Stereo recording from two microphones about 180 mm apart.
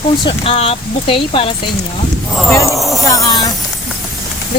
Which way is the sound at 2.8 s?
Centre (ahead or behind).